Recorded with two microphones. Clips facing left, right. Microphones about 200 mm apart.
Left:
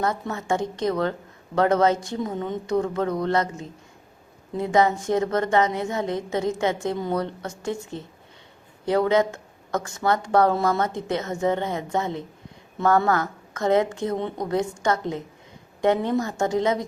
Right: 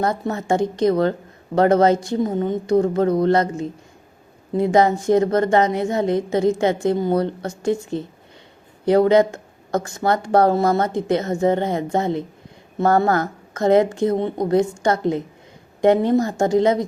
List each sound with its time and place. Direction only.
0.0 s a woman's voice: 40° right (ahead or behind)
4.6 s a woman's voice: 35° right (ahead or behind)
8.9 s a woman's voice: 35° right (ahead or behind)